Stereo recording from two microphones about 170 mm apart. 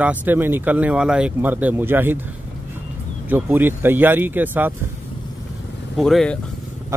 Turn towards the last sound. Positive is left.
turn(degrees=0)  # may be behind; listen again after turning